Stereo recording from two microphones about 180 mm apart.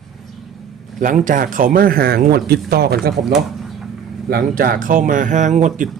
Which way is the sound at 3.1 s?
Centre (ahead or behind).